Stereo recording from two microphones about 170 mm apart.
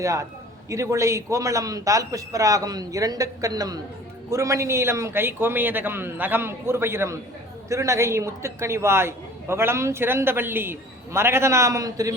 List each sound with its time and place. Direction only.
0.0 s a man's voice: 20° right (ahead or behind)